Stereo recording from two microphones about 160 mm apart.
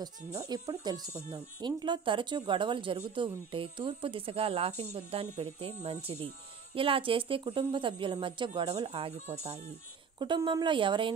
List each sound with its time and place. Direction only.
0.3 s speech: 20° right (ahead or behind); by 9.6 s 40° right (ahead or behind)
10.1 s speech: 30° right (ahead or behind)